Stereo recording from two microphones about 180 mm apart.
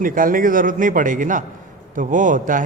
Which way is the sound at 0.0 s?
50° right (ahead or behind).